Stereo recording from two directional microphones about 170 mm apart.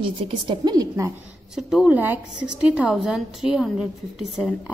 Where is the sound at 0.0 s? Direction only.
30° right (ahead or behind).